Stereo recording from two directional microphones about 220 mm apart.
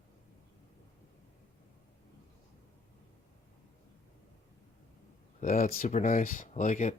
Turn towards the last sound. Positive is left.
turn(degrees=35)  # may be behind; listen again after turning